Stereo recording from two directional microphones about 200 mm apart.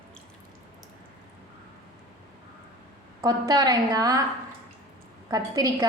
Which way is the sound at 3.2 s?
20° right (ahead or behind).